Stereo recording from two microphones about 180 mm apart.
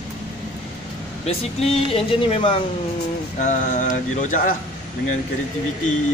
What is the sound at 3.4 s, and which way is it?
Mantra, 45° left (ahead or behind).